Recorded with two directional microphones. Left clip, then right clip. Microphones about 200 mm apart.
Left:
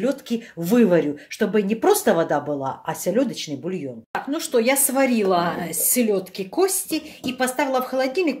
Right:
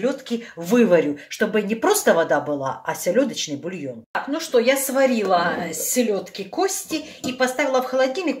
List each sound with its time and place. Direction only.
0.0 s speech: 45° left (ahead or behind); by 3.7 s 20° left (ahead or behind)
4.3 s speech: 45° left (ahead or behind)